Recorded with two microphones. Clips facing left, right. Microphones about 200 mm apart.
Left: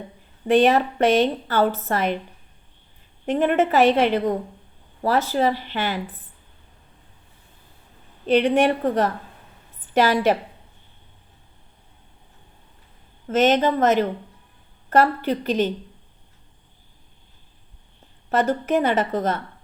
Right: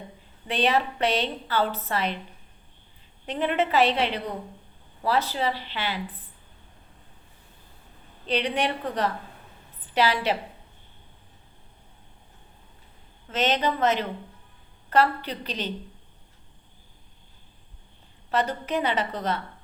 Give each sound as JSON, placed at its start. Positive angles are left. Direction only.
{"t": 0.4, "sound": "a woman's voice", "side_deg": 45}
{"t": 3.2, "sound": "a woman's voice", "side_deg": 50}
{"t": 8.3, "sound": "a woman's voice", "side_deg": 45}
{"t": 13.2, "sound": "a woman's voice", "side_deg": 45}
{"t": 18.3, "sound": "a woman's voice", "side_deg": 45}